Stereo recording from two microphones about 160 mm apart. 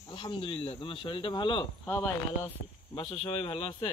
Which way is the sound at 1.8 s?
15° left (ahead or behind).